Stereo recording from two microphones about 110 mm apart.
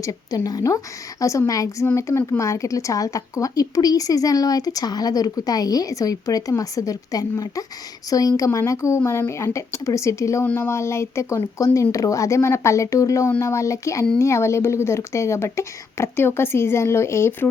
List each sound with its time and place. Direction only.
0.0 s speech: 35° left (ahead or behind)